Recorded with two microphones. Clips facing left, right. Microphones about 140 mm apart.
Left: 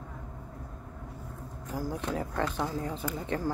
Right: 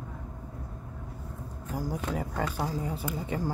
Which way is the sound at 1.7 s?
10° right (ahead or behind).